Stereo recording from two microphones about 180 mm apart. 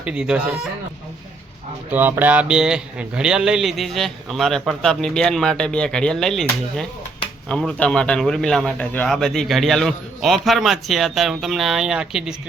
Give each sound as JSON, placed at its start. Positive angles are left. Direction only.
{"t": 0.0, "sound": "a man's voice", "side_deg": -5}
{"t": 1.9, "sound": "a man's voice", "side_deg": -10}